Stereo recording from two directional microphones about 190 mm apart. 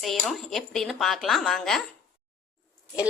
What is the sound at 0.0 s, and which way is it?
Speech, centre (ahead or behind).